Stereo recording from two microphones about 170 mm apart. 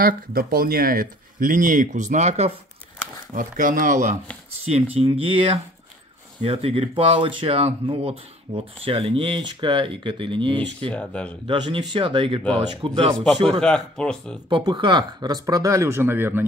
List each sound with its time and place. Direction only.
0.0 s speech: 60° right (ahead or behind); by 2.5 s 40° right (ahead or behind)
3.3 s speech: 50° right (ahead or behind)
4.9 s speech: 35° right (ahead or behind)
10.9 s speech: 5° left (ahead or behind)
11.4 s speech: 30° right (ahead or behind)
13.6 s speech: 5° left (ahead or behind)
14.5 s speech: 25° right (ahead or behind)